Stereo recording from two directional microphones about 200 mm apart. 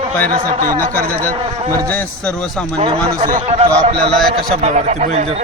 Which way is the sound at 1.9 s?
5° left (ahead or behind).